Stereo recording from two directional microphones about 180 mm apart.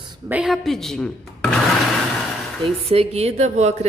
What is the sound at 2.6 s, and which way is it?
A woman's voice, 30° right (ahead or behind).